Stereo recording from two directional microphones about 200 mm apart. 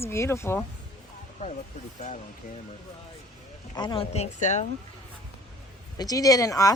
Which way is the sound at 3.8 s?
25° left (ahead or behind).